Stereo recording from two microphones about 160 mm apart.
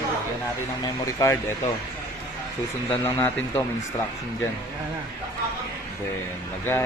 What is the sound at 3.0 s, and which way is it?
Speech, 10° left (ahead or behind).